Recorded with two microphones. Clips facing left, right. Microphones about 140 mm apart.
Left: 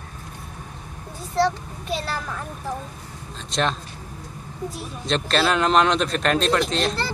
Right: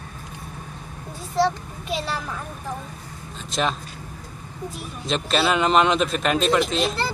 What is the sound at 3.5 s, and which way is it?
Speech, centre (ahead or behind).